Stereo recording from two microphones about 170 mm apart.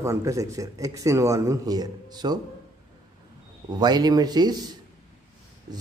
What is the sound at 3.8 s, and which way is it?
A man's voice, 25° right (ahead or behind).